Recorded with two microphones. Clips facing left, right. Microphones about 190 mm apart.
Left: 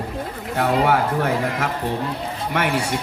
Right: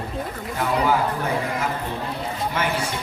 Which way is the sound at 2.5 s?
70° left (ahead or behind).